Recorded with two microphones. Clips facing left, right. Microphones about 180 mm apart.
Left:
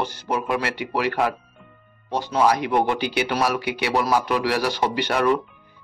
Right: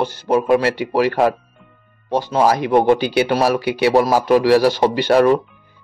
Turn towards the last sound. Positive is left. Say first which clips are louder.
# right 7 dB
turn(degrees=-30)  # may be behind; listen again after turning